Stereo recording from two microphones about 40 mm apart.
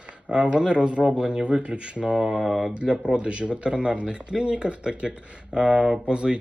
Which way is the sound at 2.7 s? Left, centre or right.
Right.